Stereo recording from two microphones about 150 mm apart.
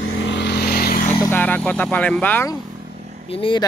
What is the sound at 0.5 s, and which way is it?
Vehicle, 90° left.